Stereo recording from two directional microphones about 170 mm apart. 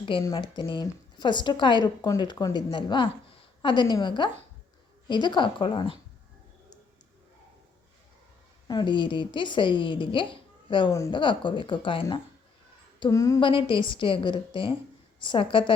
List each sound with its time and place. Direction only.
0.0 s speech: 30° left (ahead or behind)
8.6 s speech: 25° left (ahead or behind)
13.5 s a woman's voice: 30° left (ahead or behind)